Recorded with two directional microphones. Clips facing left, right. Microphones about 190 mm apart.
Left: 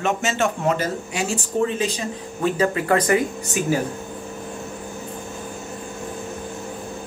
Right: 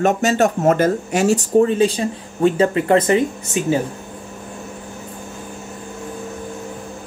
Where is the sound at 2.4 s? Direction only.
30° right (ahead or behind).